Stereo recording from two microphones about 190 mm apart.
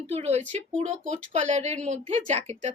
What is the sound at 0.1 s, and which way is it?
A woman's voice, 35° right (ahead or behind).